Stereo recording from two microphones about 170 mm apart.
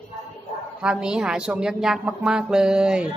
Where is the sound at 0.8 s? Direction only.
5° right (ahead or behind).